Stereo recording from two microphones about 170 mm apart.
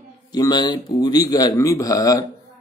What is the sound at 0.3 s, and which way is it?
Speech, 25° left (ahead or behind).